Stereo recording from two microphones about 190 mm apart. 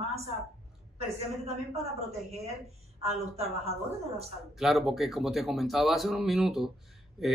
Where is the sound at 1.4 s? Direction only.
35° right (ahead or behind).